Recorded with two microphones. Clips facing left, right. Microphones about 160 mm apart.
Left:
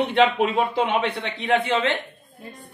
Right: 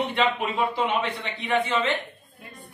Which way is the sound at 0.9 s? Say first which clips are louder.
Left 4 dB; 65° left (ahead or behind).